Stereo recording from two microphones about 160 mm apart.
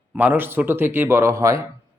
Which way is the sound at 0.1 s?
10° right (ahead or behind).